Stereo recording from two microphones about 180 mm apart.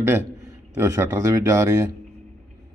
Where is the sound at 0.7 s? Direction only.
15° right (ahead or behind).